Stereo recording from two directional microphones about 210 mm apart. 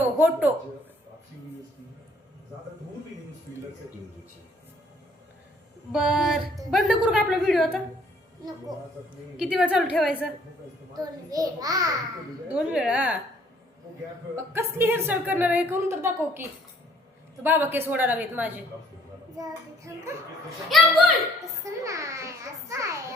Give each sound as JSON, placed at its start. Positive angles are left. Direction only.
{"t": 0.2, "sound": "a woman's voice", "side_deg": -10}
{"t": 5.9, "sound": "a woman's voice", "side_deg": -5}
{"t": 9.4, "sound": "a woman's voice", "side_deg": -5}
{"t": 10.9, "sound": "a woman's voice", "side_deg": -15}
{"t": 12.5, "sound": "a woman's voice", "side_deg": -5}
{"t": 14.3, "sound": "a woman's voice", "side_deg": -10}
{"t": 20.7, "sound": "a woman's voice", "side_deg": 0}
{"t": 21.6, "sound": "a woman's voice", "side_deg": -15}